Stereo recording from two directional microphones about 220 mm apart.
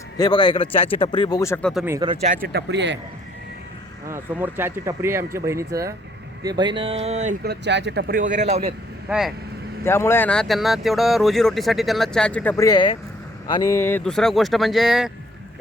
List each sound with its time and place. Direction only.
0.2 s speech: 20° left (ahead or behind)
1.7 s speech: 10° right (ahead or behind)
2.0 s speech: 35° right (ahead or behind); by 3.0 s 50° right (ahead or behind)
4.1 s speech: 10° right (ahead or behind); by 7.3 s 30° right (ahead or behind)
7.4 s speech: 50° right (ahead or behind); by 8.7 s 30° right (ahead or behind)
9.0 s speech: 5° right (ahead or behind)
9.8 s speech: 10° left (ahead or behind)